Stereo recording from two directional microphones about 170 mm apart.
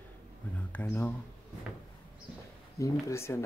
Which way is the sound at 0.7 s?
10° left (ahead or behind).